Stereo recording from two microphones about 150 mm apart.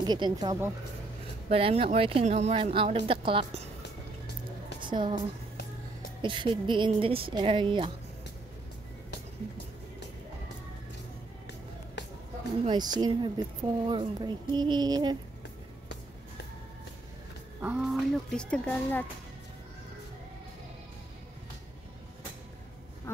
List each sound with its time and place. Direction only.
0.0 s speech: 30° right (ahead or behind)
1.5 s a woman's voice: 40° right (ahead or behind)
4.7 s music: 30° right (ahead or behind)
6.2 s a woman's voice: 35° right (ahead or behind)
12.6 s speech: 30° right (ahead or behind)
17.6 s speech: 10° right (ahead or behind)
17.8 s speech: centre (ahead or behind)
23.1 s quack: 15° left (ahead or behind)